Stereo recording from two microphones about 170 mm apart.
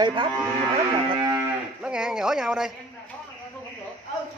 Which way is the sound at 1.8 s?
5° right (ahead or behind).